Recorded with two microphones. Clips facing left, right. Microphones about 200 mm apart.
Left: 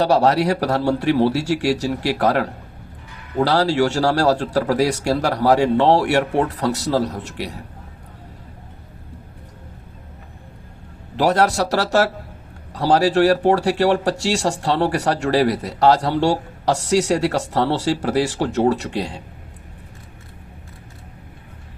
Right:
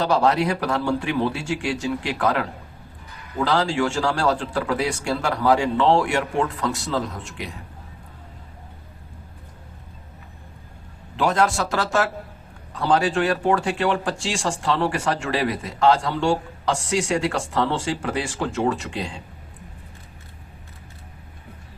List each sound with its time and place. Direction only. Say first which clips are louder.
0.0 s speech: left 4 dB; 40° left (ahead or behind)
11.2 s speech: left 4 dB; 40° left (ahead or behind)